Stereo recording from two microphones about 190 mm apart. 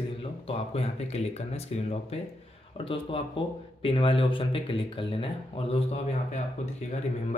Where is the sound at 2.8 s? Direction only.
30° left (ahead or behind).